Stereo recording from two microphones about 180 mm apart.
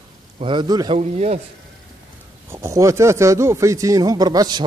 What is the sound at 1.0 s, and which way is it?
Speech, 40° right (ahead or behind).